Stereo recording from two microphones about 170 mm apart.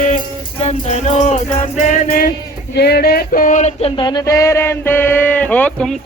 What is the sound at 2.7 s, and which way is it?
Music, 70° left (ahead or behind).